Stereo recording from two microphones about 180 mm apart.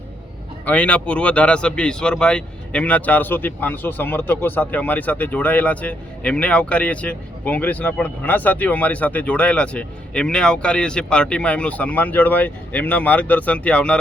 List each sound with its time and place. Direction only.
0.6 s speech: 10° left (ahead or behind)